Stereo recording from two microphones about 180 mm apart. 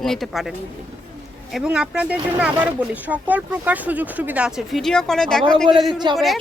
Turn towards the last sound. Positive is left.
turn(degrees=0)  # may be behind; listen again after turning